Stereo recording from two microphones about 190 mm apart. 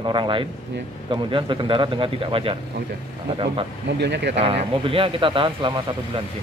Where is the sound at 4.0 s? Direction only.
65° right (ahead or behind).